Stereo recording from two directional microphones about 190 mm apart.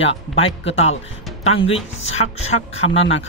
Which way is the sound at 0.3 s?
30° left (ahead or behind).